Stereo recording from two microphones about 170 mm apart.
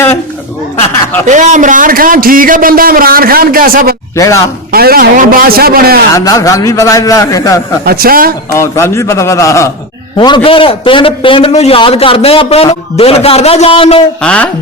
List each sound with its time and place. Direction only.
1.3 s a man's voice: 45° right (ahead or behind)
4.2 s a man's voice: 20° left (ahead or behind)
4.7 s a man's voice: 60° right (ahead or behind)
6.1 s a man's voice: 20° left (ahead or behind)
7.9 s a man's voice: 60° right (ahead or behind)
8.5 s a man's voice: 15° left (ahead or behind); by 14.0 s 35° left (ahead or behind)
14.2 s a man's voice: 5° left (ahead or behind)